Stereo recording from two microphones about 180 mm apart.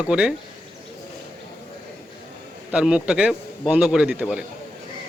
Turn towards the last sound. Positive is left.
turn(degrees=-5)  # may be behind; listen again after turning